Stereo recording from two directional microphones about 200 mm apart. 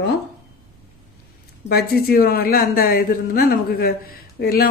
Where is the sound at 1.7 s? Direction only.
50° left (ahead or behind).